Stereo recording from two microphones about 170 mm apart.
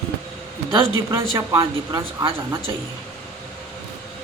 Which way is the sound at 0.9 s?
20° right (ahead or behind).